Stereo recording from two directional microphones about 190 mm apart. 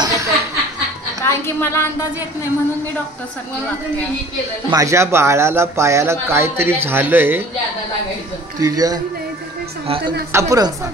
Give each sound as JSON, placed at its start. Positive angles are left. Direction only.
{"t": 0.0, "sound": "chuckle", "side_deg": -15}
{"t": 1.2, "sound": "a woman's voice", "side_deg": 15}
{"t": 4.6, "sound": "speech", "side_deg": -15}
{"t": 8.5, "sound": "a man's voice", "side_deg": -20}
{"t": 10.3, "sound": "speech", "side_deg": -15}